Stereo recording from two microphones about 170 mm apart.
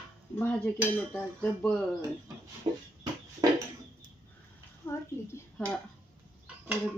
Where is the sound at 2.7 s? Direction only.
35° right (ahead or behind).